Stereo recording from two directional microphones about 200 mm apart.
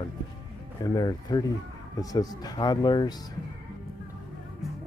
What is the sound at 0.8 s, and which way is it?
Speech, 20° left (ahead or behind).